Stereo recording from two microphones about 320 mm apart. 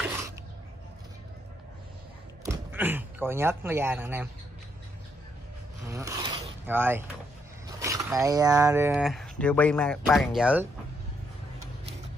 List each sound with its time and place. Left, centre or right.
0.0 s a sound: centre
2.4 s speech: centre
5.9 s zipper: centre
7.6 s speech: centre